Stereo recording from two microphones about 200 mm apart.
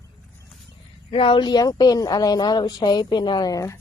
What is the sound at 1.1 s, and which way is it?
Speech, 25° left (ahead or behind).